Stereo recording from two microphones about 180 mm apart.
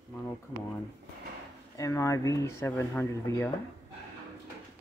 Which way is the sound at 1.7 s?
15° left (ahead or behind).